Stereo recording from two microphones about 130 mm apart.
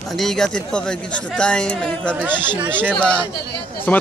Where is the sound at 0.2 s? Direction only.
5° left (ahead or behind).